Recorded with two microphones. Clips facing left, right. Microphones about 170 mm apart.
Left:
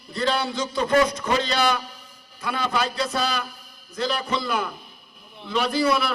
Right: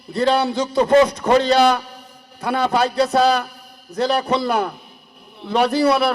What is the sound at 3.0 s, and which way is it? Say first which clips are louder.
A man's voice: right 10 dB; 65° right (ahead or behind).